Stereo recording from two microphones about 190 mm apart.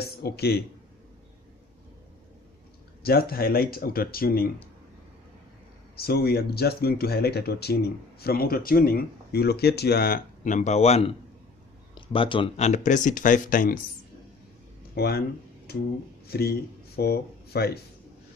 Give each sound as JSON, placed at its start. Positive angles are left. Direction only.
{"t": 0.0, "sound": "speech", "side_deg": 55}
{"t": 3.0, "sound": "speech", "side_deg": 55}
{"t": 5.9, "sound": "speech", "side_deg": 55}
{"t": 15.0, "sound": "speech", "side_deg": 55}